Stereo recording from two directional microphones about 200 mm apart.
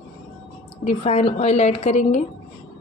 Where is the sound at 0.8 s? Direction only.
35° left (ahead or behind).